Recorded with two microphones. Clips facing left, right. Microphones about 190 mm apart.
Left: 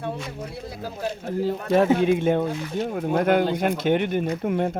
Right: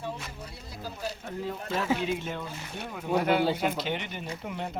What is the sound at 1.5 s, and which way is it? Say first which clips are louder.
Speech: left 11 dB; 65° left (ahead or behind).